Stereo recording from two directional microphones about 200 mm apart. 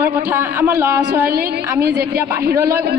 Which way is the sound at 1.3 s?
50° right (ahead or behind).